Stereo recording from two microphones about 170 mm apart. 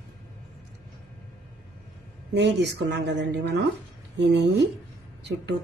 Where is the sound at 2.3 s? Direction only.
90° right.